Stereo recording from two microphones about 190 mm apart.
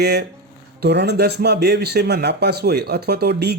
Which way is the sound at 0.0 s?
60° right (ahead or behind).